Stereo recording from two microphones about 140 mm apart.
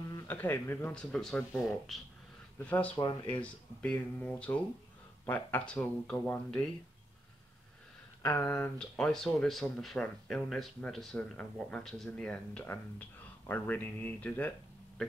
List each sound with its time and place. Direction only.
0.1 s speech: 15° left (ahead or behind)
1.1 s speech: 5° left (ahead or behind)
3.0 s speech: 35° left (ahead or behind)
3.8 s speech: 10° left (ahead or behind)
8.2 s speech: 15° left (ahead or behind)